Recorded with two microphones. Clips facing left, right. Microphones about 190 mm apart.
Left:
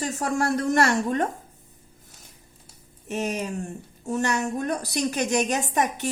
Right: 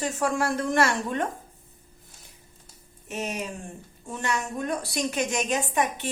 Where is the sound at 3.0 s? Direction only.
40° left (ahead or behind).